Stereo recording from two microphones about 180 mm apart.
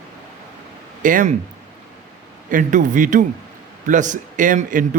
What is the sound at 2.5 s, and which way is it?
A man's voice, 45° right (ahead or behind).